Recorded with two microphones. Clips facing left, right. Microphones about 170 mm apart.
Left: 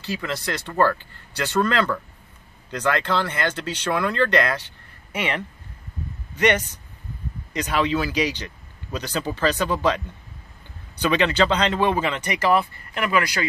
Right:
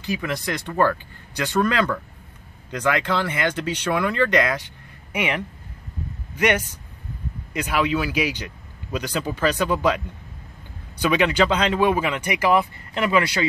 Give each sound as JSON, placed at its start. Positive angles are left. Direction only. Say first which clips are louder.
{"t": 0.0, "sound": "a man's voice", "louder": "right 2 dB", "side_deg": -15}
{"t": 12.9, "sound": "speech", "louder": "right 2 dB", "side_deg": -25}